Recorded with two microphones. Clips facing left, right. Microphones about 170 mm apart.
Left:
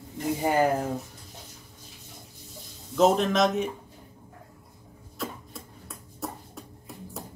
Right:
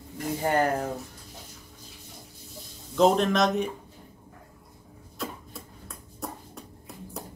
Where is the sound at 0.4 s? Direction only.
10° left (ahead or behind).